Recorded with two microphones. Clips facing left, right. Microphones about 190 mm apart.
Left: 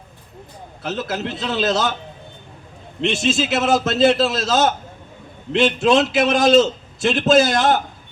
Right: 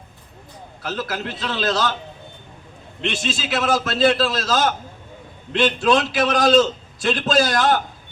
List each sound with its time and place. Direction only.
0.8 s a man's voice: 25° left (ahead or behind)
3.0 s a man's voice: 25° left (ahead or behind)